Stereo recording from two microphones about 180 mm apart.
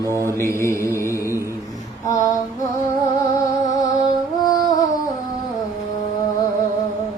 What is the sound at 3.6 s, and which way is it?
Music, 20° left (ahead or behind).